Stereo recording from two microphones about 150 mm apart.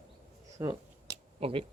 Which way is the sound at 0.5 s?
20° right (ahead or behind).